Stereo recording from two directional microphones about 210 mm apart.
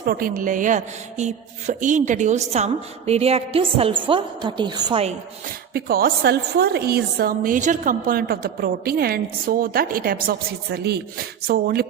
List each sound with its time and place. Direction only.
0.0 s a woman's voice: 45° right (ahead or behind); by 5.1 s 25° right (ahead or behind)
5.7 s a woman's voice: 45° right (ahead or behind)